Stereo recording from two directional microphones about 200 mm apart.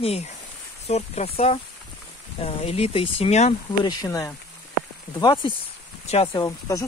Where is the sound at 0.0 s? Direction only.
30° left (ahead or behind).